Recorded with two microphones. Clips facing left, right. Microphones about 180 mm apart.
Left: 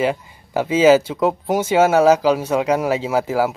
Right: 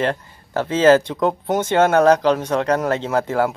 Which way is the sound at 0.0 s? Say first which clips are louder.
Left 2 dB; 10° left (ahead or behind).